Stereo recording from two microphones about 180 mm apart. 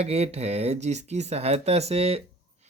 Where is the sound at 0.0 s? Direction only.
35° right (ahead or behind).